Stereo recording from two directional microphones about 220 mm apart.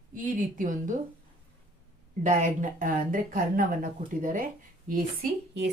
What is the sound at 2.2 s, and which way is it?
Speech, 35° right (ahead or behind).